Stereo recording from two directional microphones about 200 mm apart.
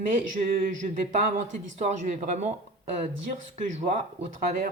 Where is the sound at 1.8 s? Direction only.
35° right (ahead or behind).